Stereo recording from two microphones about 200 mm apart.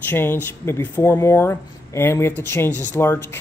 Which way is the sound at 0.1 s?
10° left (ahead or behind).